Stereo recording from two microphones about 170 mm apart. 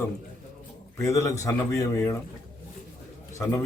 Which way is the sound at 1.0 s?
20° left (ahead or behind).